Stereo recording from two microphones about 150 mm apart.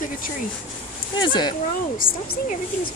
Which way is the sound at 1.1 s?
30° left (ahead or behind).